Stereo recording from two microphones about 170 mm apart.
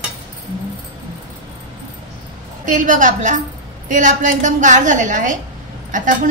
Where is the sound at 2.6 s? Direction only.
50° right (ahead or behind).